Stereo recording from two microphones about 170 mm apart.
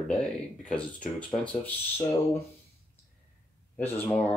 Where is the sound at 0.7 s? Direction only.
5° left (ahead or behind).